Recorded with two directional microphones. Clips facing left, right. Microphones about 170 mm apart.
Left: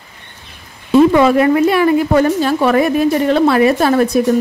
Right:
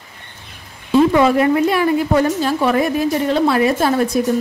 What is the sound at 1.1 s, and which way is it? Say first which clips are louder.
A woman's voice: left 3 dB; 70° left (ahead or behind).